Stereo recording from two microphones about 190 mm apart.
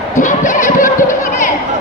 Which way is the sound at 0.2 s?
40° left (ahead or behind).